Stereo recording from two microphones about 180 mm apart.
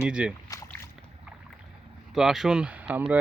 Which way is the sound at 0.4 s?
15° left (ahead or behind).